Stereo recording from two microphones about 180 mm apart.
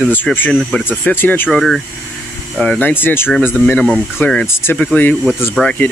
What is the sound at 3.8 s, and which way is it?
Speech, 5° right (ahead or behind).